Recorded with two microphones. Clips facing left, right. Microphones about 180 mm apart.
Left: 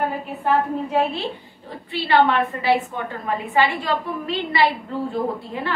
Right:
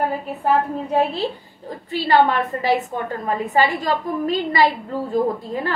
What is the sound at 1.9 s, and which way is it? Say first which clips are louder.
A woman's voice: right 1 dB; 40° right (ahead or behind).